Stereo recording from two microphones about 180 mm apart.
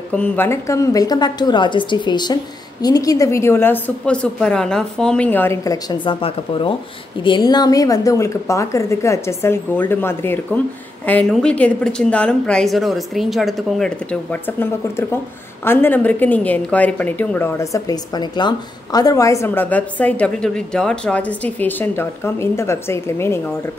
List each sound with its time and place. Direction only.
0.1 s a woman's voice: 10° left (ahead or behind)